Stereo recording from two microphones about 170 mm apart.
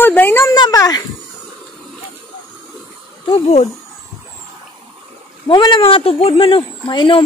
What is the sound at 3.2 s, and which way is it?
Speech, 35° left (ahead or behind).